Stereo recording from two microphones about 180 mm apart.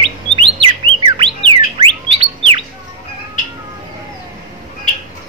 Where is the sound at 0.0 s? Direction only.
30° right (ahead or behind).